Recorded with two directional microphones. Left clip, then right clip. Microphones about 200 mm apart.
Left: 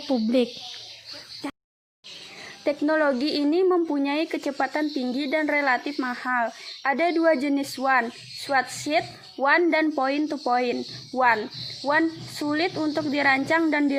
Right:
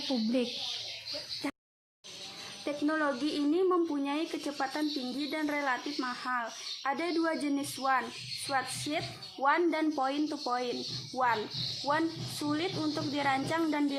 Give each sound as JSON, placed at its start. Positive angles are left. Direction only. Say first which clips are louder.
{"t": 0.1, "sound": "speech", "louder": "left 10 dB", "side_deg": 25}
{"t": 2.6, "sound": "speech", "louder": "left 9 dB", "side_deg": 40}
{"t": 11.9, "sound": "speech", "louder": "left 9 dB", "side_deg": 40}